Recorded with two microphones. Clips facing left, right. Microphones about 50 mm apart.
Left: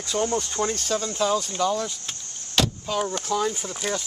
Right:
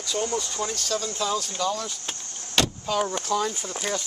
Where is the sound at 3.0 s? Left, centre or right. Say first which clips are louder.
Even; centre.